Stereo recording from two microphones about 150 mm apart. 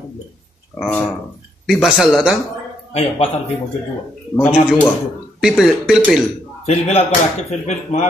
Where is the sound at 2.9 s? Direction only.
45° left (ahead or behind).